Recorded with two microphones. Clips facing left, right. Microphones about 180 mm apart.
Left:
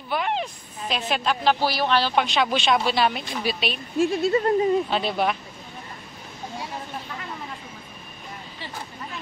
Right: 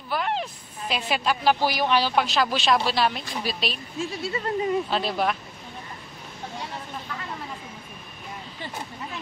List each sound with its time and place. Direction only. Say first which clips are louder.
0.1 s a woman's voice: left 1 dB; centre (ahead or behind)
2.1 s speech: left 1 dB; centre (ahead or behind)
4.0 s speech: left 9 dB; 50° left (ahead or behind)
4.8 s speech: left 1 dB; centre (ahead or behind)